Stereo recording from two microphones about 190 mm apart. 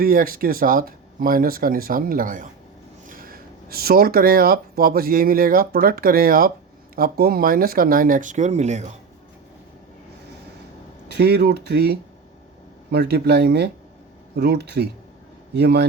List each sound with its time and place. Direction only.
0.0 s speech: 50° right (ahead or behind)
11.1 s speech: 55° right (ahead or behind)